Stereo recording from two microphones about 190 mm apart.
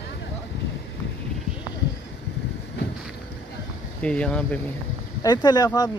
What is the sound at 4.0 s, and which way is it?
Speech, 5° left (ahead or behind).